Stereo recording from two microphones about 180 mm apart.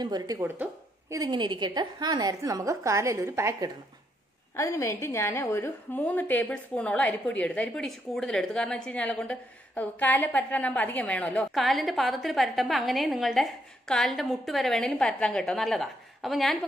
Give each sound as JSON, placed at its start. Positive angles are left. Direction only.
{"t": 0.0, "sound": "a woman's voice", "side_deg": -20}
{"t": 4.6, "sound": "a woman's voice", "side_deg": 15}